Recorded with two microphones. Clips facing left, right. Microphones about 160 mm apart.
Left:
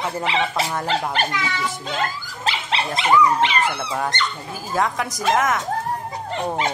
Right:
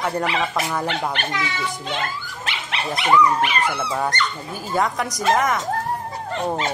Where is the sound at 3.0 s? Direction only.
25° left (ahead or behind).